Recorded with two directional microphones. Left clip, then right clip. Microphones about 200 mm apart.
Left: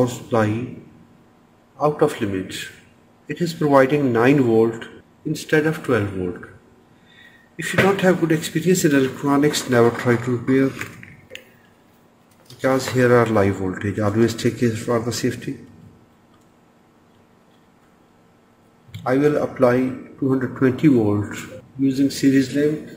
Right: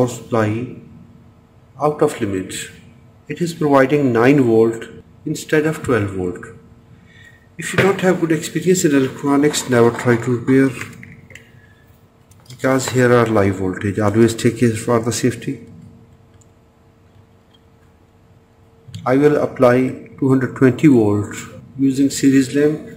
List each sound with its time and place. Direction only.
0.0 s speech: centre (ahead or behind)
1.8 s speech: centre (ahead or behind)
7.5 s speech: centre (ahead or behind)
12.5 s speech: 10° right (ahead or behind)
19.0 s speech: 10° right (ahead or behind)
20.9 s speech: centre (ahead or behind)